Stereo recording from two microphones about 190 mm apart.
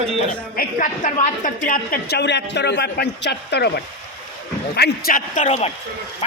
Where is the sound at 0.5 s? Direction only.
50° left (ahead or behind).